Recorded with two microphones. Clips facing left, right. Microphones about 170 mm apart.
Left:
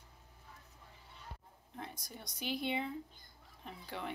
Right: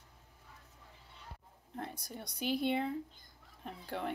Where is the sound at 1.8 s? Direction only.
60° right (ahead or behind).